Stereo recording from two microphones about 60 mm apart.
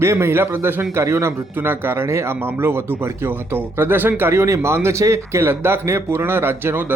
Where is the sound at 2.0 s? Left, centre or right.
Right.